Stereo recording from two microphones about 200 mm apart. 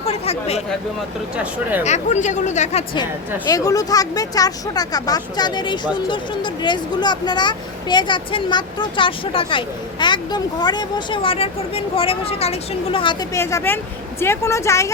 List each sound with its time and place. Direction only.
0.0 s chatter: 30° left (ahead or behind)
1.8 s speech: 35° left (ahead or behind)
3.5 s speech: 15° left (ahead or behind)
13.3 s speech: 15° left (ahead or behind)